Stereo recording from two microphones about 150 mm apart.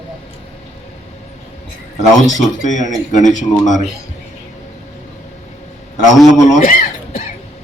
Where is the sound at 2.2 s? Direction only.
55° left (ahead or behind).